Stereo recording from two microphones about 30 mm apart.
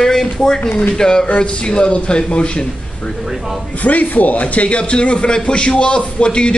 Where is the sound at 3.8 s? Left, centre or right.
Left.